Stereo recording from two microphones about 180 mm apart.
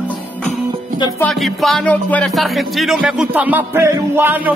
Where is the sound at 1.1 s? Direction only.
5° left (ahead or behind).